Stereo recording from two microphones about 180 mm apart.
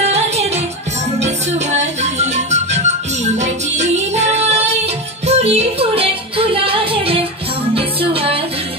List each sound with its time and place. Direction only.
0.0 s music: 35° right (ahead or behind)